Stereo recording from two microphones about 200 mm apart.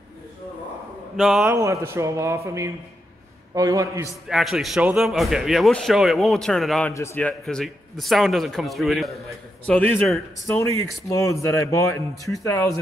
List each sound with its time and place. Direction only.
1.1 s speech: centre (ahead or behind)
1.5 s a man's voice: 15° right (ahead or behind)
4.1 s speech: centre (ahead or behind)
6.9 s speech: 15° left (ahead or behind)
10.4 s speech: 15° left (ahead or behind)